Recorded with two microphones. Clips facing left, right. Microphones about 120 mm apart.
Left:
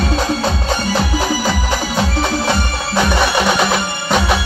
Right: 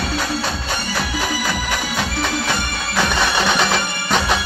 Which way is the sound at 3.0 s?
15° left (ahead or behind).